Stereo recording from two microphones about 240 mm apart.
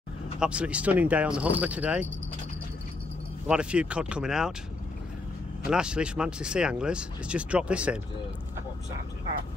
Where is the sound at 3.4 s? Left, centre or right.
Centre.